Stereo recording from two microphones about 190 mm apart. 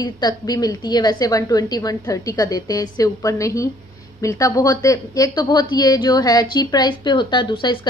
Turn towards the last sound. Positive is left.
turn(degrees=25)  # may be behind; listen again after turning